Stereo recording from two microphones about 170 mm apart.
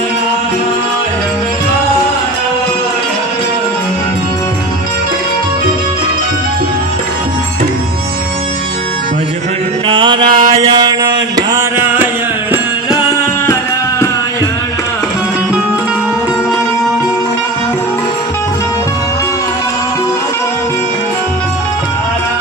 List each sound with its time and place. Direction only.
9.8 s chant: 30° right (ahead or behind)
10.3 s mantra: 50° right (ahead or behind)
10.6 s mantra: 30° right (ahead or behind)
11.3 s a sound: 15° right (ahead or behind)